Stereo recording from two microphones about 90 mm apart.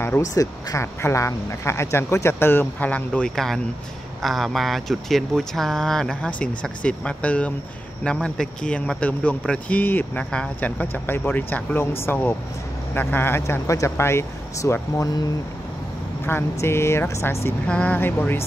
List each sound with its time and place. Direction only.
0.2 s speech: 40° left (ahead or behind)
16.3 s speech: 25° left (ahead or behind)
17.6 s speech: 10° left (ahead or behind)
17.9 s speech: 25° left (ahead or behind)